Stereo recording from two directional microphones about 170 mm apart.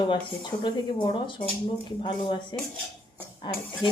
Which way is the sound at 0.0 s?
30° left (ahead or behind).